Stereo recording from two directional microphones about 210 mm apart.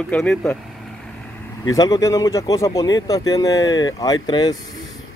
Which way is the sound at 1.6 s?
15° left (ahead or behind).